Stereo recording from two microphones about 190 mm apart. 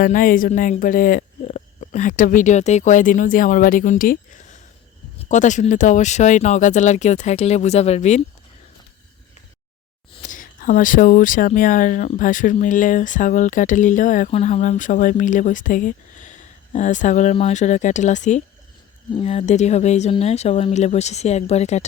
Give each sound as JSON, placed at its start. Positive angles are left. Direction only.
{"t": 0.0, "sound": "speech", "side_deg": 45}
{"t": 10.2, "sound": "speech", "side_deg": 45}